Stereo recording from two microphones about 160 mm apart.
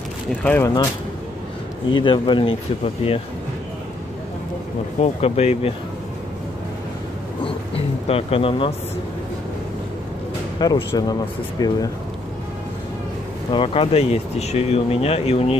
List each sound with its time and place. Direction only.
0.4 s speech: 10° left (ahead or behind)
1.9 s speech: 30° left (ahead or behind)
5.0 s speech: 40° left (ahead or behind)
7.4 s speech: 35° left (ahead or behind)
10.6 s speech: 25° left (ahead or behind)
13.5 s speech: 35° left (ahead or behind)